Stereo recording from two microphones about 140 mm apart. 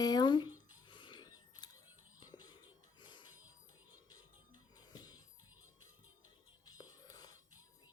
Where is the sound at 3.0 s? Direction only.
35° left (ahead or behind).